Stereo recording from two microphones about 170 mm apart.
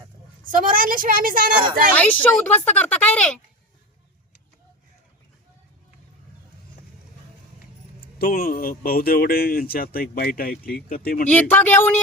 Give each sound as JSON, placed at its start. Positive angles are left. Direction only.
{"t": 0.6, "sound": "a woman's voice", "side_deg": -55}
{"t": 2.0, "sound": "speech", "side_deg": 10}
{"t": 8.0, "sound": "speech", "side_deg": 60}
{"t": 11.3, "sound": "speech", "side_deg": 10}